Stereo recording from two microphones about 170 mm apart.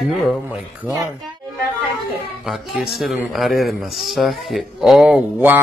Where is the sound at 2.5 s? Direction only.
Centre (ahead or behind).